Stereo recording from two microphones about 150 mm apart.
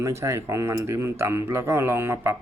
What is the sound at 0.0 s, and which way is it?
Speech, 20° right (ahead or behind).